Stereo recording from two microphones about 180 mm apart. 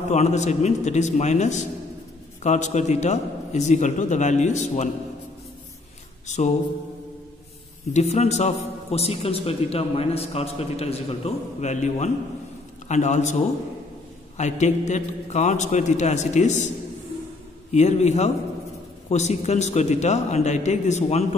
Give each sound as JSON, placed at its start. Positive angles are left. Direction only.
{"t": 0.1, "sound": "a man's voice", "side_deg": 40}
{"t": 6.2, "sound": "music", "side_deg": 40}
{"t": 7.9, "sound": "a man's voice", "side_deg": 35}
{"t": 17.6, "sound": "a man's voice", "side_deg": 40}